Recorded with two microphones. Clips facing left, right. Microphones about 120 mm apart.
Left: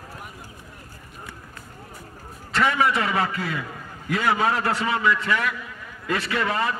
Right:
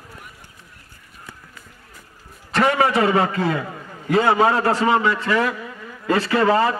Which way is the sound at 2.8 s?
30° right (ahead or behind).